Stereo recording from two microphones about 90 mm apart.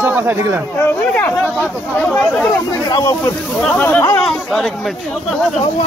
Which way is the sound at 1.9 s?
10° left (ahead or behind).